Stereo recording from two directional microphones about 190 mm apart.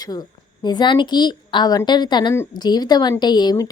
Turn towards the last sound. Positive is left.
turn(degrees=20)  # may be behind; listen again after turning